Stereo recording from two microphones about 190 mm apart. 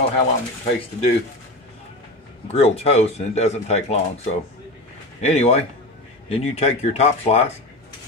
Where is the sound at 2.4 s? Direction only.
35° left (ahead or behind).